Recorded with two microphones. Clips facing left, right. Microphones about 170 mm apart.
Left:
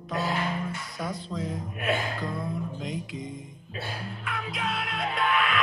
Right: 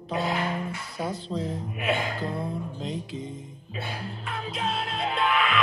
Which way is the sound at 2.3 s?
35° right (ahead or behind).